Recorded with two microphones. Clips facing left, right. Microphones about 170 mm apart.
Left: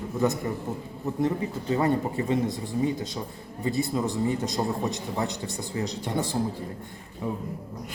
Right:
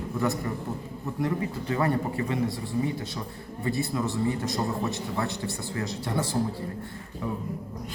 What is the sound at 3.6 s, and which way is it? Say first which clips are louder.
Speech: left 2 dB; 20° left (ahead or behind).